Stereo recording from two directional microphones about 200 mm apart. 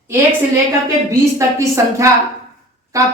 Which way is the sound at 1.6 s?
15° right (ahead or behind).